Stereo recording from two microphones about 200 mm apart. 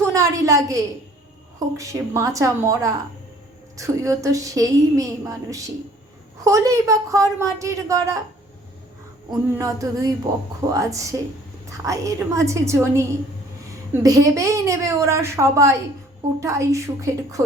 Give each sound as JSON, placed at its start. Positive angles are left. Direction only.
{"t": 0.1, "sound": "a woman's voice", "side_deg": -15}
{"t": 9.6, "sound": "a woman's voice", "side_deg": -15}